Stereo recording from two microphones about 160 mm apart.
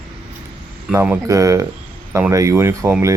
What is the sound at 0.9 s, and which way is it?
Speech, 15° right (ahead or behind).